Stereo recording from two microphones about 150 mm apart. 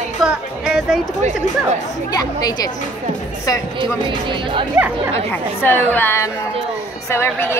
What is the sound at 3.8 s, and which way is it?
Speech, 35° right (ahead or behind).